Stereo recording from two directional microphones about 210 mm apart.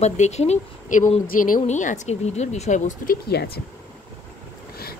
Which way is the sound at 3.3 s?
50° left (ahead or behind).